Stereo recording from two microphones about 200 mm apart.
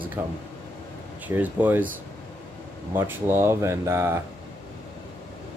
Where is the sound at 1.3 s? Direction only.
10° right (ahead or behind).